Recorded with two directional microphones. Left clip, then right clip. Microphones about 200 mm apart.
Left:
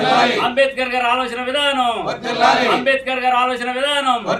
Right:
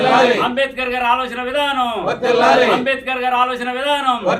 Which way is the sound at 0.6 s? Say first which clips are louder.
Left 2 dB; 15° left (ahead or behind).